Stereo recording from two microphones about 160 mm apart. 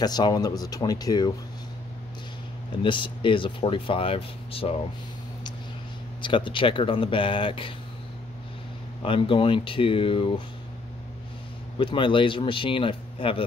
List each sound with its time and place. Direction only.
0.0 s speech: 25° left (ahead or behind)
2.8 s speech: 30° left (ahead or behind)
6.2 s speech: 30° left (ahead or behind)
9.0 s speech: 35° left (ahead or behind)
11.8 s speech: 30° left (ahead or behind)